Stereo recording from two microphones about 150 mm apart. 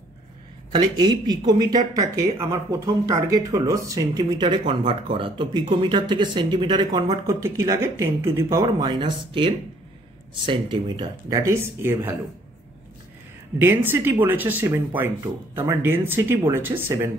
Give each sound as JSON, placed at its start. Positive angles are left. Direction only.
{"t": 0.7, "sound": "speech", "side_deg": -25}
{"t": 13.6, "sound": "speech", "side_deg": -15}